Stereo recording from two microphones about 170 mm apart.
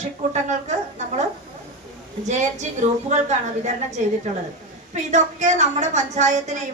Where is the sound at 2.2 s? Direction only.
45° right (ahead or behind).